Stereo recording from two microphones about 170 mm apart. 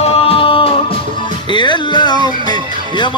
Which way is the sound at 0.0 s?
35° left (ahead or behind).